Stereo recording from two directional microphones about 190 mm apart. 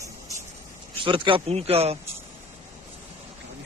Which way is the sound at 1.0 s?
25° right (ahead or behind).